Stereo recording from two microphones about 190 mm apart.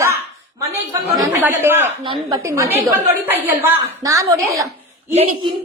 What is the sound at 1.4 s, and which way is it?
A man's voice, 10° right (ahead or behind).